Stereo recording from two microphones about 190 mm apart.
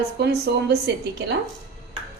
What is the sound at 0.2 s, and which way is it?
A woman's voice, 60° right (ahead or behind).